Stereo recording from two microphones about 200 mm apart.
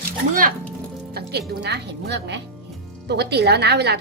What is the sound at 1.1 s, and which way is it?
A woman's voice, 55° right (ahead or behind).